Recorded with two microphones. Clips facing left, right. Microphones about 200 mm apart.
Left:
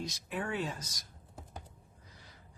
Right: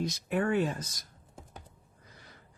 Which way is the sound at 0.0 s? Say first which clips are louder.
Right 8 dB; 55° right (ahead or behind).